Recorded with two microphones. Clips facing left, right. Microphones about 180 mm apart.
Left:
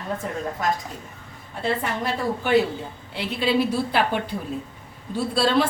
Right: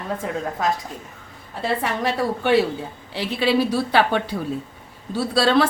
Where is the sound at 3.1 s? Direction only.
90° right.